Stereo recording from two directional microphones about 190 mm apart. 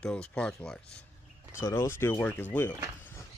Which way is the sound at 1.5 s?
15° left (ahead or behind).